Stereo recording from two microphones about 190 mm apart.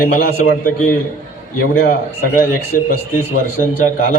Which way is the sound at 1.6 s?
50° left (ahead or behind).